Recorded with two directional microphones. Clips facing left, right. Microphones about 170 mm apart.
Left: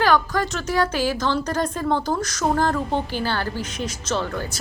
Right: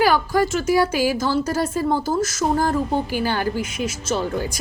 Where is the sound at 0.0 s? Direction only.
10° right (ahead or behind).